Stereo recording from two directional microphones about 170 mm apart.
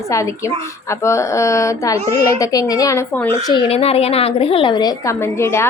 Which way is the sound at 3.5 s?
35° left (ahead or behind).